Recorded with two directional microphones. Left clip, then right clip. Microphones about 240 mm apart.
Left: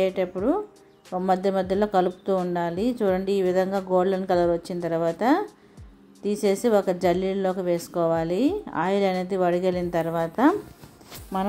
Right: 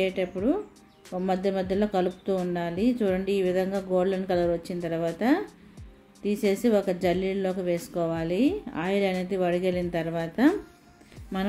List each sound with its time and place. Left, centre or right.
0.0 s speech: centre